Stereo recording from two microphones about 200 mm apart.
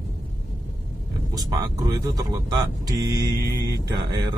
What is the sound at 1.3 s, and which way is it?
Speech, 15° right (ahead or behind).